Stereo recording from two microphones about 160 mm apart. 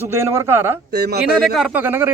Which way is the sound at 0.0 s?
15° right (ahead or behind).